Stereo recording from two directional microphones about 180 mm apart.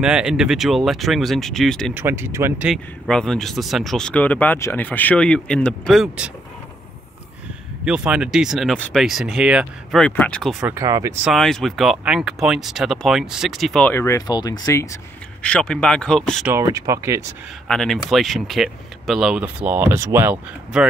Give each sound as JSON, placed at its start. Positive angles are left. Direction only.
{"t": 0.0, "sound": "speech", "side_deg": -5}
{"t": 2.0, "sound": "speech", "side_deg": -10}
{"t": 2.7, "sound": "speech", "side_deg": 5}
{"t": 7.8, "sound": "speech", "side_deg": -5}
{"t": 10.7, "sound": "speech", "side_deg": -20}
{"t": 11.2, "sound": "speech", "side_deg": 0}
{"t": 15.4, "sound": "speech", "side_deg": 5}
{"t": 16.4, "sound": "speech", "side_deg": -15}
{"t": 17.6, "sound": "speech", "side_deg": 0}
{"t": 20.7, "sound": "speech", "side_deg": -5}